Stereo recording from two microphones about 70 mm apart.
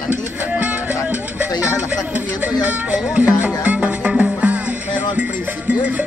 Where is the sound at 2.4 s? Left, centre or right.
Right.